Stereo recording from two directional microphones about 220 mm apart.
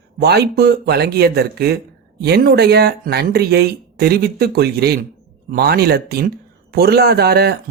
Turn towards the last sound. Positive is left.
turn(degrees=-45)  # may be behind; listen again after turning